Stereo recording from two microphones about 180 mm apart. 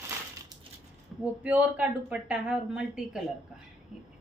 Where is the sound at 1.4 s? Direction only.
10° right (ahead or behind).